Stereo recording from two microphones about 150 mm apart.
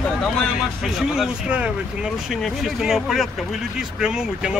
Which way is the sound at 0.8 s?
5° right (ahead or behind).